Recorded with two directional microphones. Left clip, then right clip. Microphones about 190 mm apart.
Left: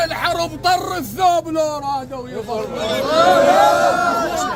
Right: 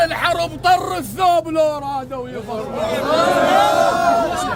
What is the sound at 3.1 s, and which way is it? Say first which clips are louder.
Speech: left 3 dB; 40° left (ahead or behind).